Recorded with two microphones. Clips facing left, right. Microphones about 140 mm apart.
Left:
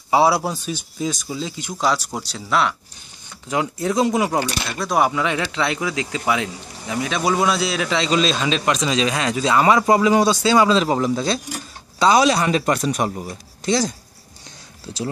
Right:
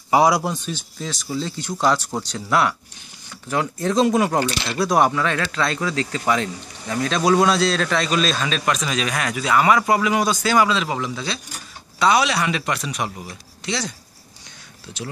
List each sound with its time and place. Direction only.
0.2 s speech: 5° left (ahead or behind)
2.3 s speech: centre (ahead or behind)
3.4 s a man's voice: 10° left (ahead or behind); by 15.0 s 30° left (ahead or behind)